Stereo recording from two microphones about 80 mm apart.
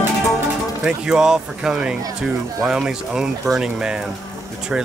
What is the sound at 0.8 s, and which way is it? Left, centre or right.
Speech, centre.